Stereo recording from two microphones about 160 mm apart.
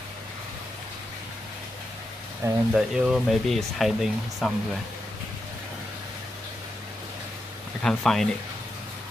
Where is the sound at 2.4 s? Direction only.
20° right (ahead or behind).